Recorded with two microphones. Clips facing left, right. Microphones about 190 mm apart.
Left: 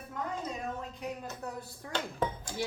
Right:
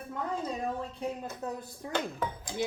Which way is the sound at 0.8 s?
30° right (ahead or behind).